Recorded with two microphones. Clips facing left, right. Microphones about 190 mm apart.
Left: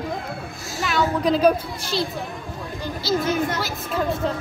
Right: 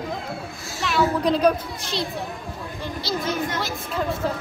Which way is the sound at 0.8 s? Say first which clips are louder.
Even; centre (ahead or behind).